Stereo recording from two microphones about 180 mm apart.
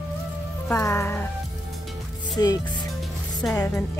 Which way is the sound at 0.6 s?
15° left (ahead or behind).